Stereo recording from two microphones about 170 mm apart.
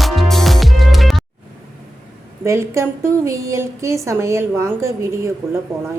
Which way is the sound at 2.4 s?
15° right (ahead or behind).